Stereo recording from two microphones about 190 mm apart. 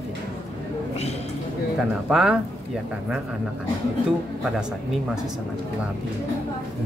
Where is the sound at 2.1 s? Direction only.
5° right (ahead or behind).